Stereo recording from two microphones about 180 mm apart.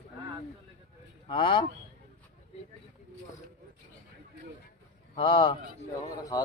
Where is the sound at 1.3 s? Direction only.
30° left (ahead or behind).